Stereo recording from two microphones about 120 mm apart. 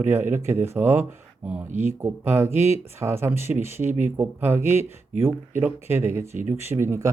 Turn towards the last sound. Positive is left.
turn(degrees=-20)  # may be behind; listen again after turning